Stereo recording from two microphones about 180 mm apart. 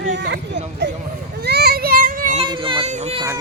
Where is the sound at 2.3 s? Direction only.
30° right (ahead or behind).